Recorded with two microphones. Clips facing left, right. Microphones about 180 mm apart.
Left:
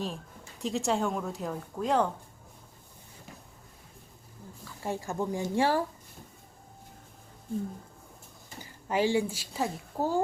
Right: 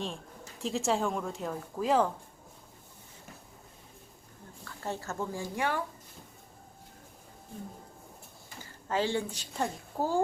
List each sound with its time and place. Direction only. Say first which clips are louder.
0.6 s speech: left 1 dB; centre (ahead or behind)
4.6 s speech: left 3 dB; 10° left (ahead or behind)
5.5 s speech: left 6 dB; 30° left (ahead or behind)
8.6 s speech: left 3 dB; 15° left (ahead or behind)